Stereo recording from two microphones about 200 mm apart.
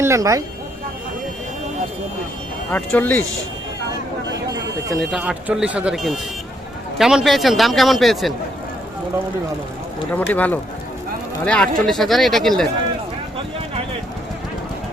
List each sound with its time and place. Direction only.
0.0 s speech: 15° right (ahead or behind)
2.7 s speech: 10° left (ahead or behind)
5.1 s a man's voice: 5° right (ahead or behind)
10.1 s a man's voice: 10° left (ahead or behind)